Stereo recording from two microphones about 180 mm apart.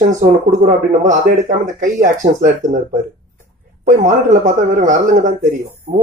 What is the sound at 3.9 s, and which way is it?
Speech, 45° right (ahead or behind).